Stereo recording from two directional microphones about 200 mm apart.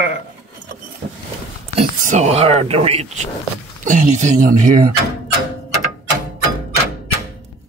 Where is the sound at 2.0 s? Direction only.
35° right (ahead or behind).